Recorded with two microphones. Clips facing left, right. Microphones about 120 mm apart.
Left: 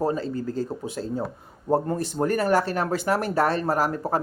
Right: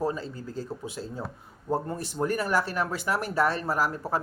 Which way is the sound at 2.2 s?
70° left (ahead or behind).